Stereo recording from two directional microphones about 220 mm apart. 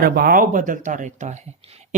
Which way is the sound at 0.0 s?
45° right (ahead or behind).